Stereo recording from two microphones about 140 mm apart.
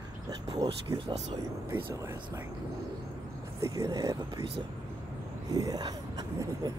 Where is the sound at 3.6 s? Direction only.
20° right (ahead or behind).